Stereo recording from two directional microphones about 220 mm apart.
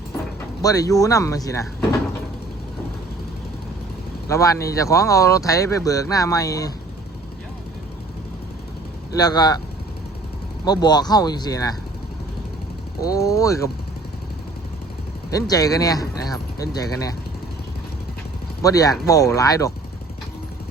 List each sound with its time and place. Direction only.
0.6 s speech: 15° left (ahead or behind)
4.3 s speech: 15° left (ahead or behind)
9.1 s speech: 15° left (ahead or behind)
10.7 s speech: 20° left (ahead or behind)
13.0 s speech: 15° left (ahead or behind)
15.3 s speech: 15° left (ahead or behind)
18.6 s speech: 15° left (ahead or behind)